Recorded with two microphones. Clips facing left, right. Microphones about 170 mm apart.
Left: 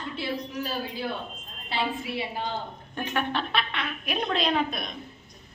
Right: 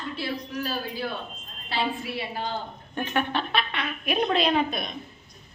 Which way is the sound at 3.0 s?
Centre (ahead or behind).